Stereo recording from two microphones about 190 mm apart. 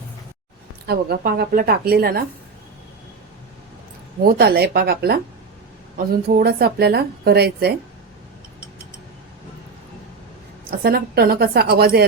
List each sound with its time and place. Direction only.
0.9 s a woman's voice: 55° right (ahead or behind)
4.2 s speech: 55° right (ahead or behind)
6.2 s speech: 55° right (ahead or behind)
10.7 s speech: 55° right (ahead or behind)